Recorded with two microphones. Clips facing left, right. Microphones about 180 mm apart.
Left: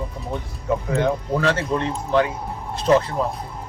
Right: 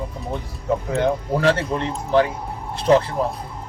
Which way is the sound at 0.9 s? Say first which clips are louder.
Right 1 dB; 35° right (ahead or behind).